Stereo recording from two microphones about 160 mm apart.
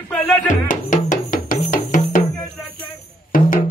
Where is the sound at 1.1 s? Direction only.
55° left (ahead or behind).